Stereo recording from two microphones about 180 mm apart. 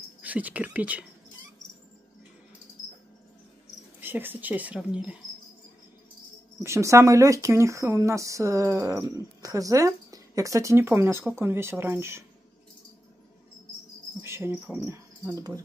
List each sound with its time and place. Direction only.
0.2 s speech: 10° right (ahead or behind)
4.0 s speech: 10° right (ahead or behind)
6.6 s speech: 15° right (ahead or behind)
14.2 s cricket: 15° right (ahead or behind)
14.9 s speech: 15° right (ahead or behind)